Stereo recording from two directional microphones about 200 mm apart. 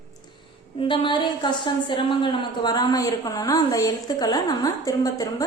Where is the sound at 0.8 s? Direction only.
25° left (ahead or behind).